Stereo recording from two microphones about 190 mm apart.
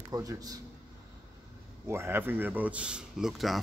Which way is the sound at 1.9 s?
10° right (ahead or behind).